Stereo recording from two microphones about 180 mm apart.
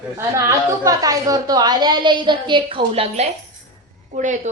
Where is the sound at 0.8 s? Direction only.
20° right (ahead or behind); by 4.3 s 45° right (ahead or behind).